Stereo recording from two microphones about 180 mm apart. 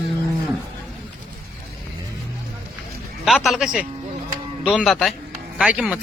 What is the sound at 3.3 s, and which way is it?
A man's voice, centre (ahead or behind).